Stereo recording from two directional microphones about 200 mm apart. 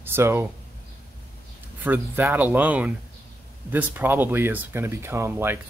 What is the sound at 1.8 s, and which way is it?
Speech, 10° right (ahead or behind).